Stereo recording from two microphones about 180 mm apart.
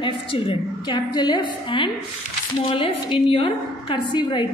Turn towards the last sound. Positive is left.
turn(degrees=25)  # may be behind; listen again after turning